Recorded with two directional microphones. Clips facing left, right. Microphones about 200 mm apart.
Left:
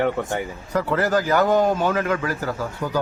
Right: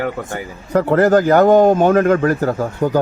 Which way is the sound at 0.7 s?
50° right (ahead or behind).